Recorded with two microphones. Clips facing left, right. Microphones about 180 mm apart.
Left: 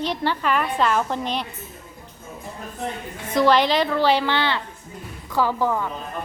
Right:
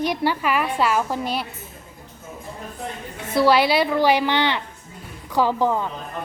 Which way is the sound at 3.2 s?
10° right (ahead or behind).